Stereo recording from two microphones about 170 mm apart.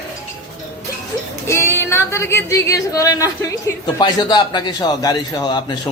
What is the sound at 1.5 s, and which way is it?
A man's voice, 15° left (ahead or behind).